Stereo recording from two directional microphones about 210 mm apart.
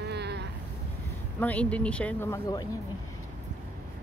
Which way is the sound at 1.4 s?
5° left (ahead or behind).